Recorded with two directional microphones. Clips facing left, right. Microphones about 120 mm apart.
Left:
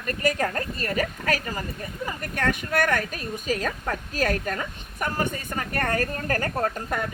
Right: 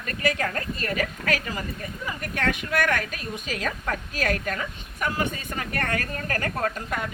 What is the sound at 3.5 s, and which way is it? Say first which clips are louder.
A woman's voice: left 2 dB; 40° left (ahead or behind).